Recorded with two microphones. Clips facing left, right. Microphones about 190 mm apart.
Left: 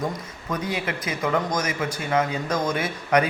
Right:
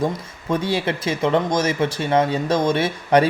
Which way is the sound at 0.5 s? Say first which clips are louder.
Right 6 dB; 30° right (ahead or behind).